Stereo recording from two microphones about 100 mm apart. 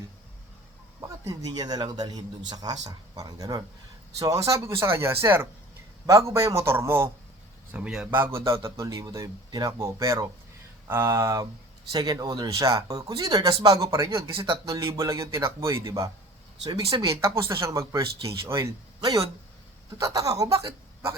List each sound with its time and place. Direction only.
1.0 s a man's voice: 35° right (ahead or behind)
18.9 s speech: 40° right (ahead or behind)